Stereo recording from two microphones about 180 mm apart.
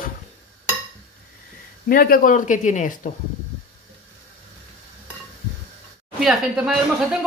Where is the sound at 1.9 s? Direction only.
55° left (ahead or behind).